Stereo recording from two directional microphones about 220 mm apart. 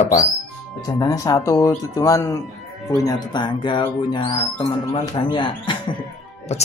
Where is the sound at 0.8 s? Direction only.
15° left (ahead or behind).